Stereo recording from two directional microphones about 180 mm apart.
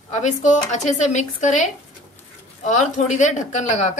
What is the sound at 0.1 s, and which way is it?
Speech, 40° left (ahead or behind).